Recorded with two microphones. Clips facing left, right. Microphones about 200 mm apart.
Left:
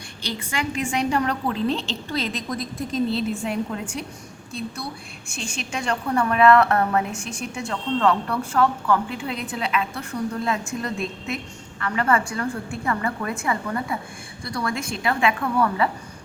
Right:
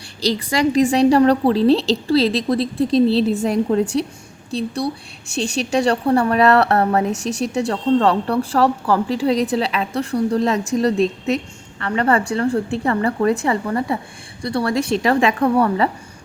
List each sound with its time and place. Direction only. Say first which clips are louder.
0.2 s a woman's voice: right 10 dB; 35° right (ahead or behind)
11.8 s a woman's voice: right 4 dB; 30° right (ahead or behind)